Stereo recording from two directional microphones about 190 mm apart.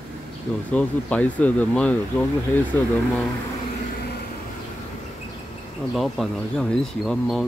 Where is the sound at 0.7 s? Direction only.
5° left (ahead or behind).